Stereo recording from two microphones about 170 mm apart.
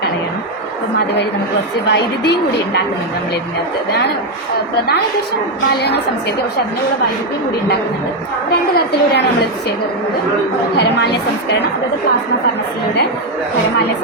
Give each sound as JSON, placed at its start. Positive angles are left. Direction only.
{"t": 1.9, "sound": "a woman's voice", "side_deg": 75}
{"t": 5.7, "sound": "a woman's voice", "side_deg": 75}
{"t": 8.7, "sound": "a woman's voice", "side_deg": 70}
{"t": 10.8, "sound": "a woman's voice", "side_deg": 75}